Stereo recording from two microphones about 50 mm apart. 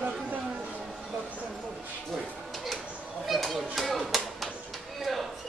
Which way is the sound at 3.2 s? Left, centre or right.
Centre.